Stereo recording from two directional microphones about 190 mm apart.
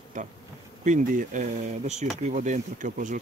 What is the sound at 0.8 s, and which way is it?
Speech, 40° right (ahead or behind).